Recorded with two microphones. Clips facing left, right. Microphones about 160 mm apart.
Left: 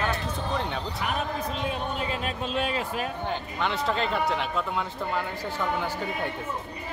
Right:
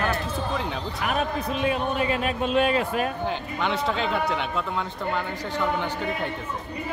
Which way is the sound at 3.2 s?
Centre (ahead or behind).